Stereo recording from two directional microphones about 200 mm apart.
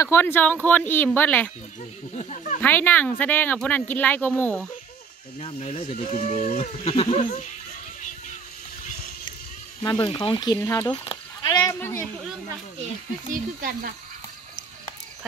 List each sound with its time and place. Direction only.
0.0 s speech: 10° left (ahead or behind)
2.1 s a sound: 35° left (ahead or behind)
2.6 s speech: 10° left (ahead or behind)
5.4 s speech: 30° left (ahead or behind)
9.8 s speech: 20° left (ahead or behind)
13.3 s speech: 45° right (ahead or behind)